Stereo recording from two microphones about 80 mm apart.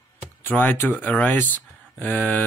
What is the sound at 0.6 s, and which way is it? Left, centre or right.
Speech, left.